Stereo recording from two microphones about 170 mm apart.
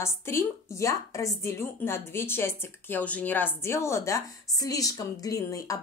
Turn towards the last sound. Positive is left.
turn(degrees=20)  # may be behind; listen again after turning